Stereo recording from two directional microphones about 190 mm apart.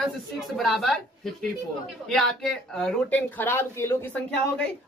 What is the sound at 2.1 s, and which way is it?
Speech, centre (ahead or behind).